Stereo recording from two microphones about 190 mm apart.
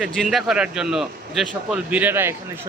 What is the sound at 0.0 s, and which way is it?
A man's voice, centre (ahead or behind).